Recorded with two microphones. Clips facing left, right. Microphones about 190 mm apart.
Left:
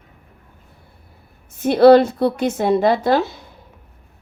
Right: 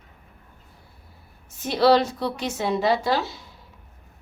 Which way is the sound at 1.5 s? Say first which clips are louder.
Left 9 dB; 55° left (ahead or behind).